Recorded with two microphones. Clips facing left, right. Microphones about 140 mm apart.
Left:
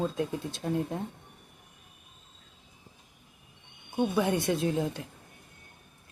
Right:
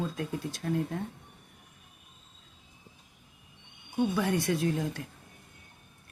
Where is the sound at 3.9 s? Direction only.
20° left (ahead or behind).